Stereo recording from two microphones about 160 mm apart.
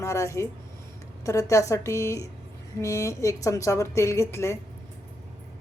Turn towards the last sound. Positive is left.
turn(degrees=15)  # may be behind; listen again after turning